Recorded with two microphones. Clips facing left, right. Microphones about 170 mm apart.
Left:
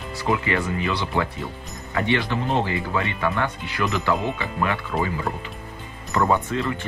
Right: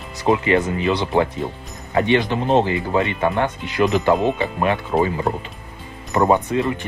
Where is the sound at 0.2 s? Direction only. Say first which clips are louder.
Right 6 dB; 20° right (ahead or behind).